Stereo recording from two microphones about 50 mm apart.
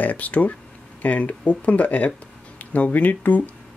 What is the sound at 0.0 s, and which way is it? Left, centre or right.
Speech, left.